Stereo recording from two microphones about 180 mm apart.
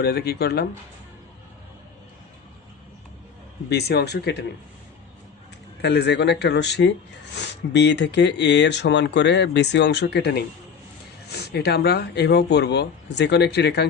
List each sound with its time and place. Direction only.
0.0 s speech: 65° left (ahead or behind)
3.7 s speech: 65° left (ahead or behind)
5.8 s speech: 70° left (ahead or behind)